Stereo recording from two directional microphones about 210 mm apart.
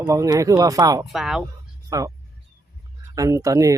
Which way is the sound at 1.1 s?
Centre (ahead or behind).